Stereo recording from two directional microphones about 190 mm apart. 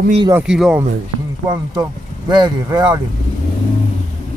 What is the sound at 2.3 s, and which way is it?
Speech, 20° right (ahead or behind).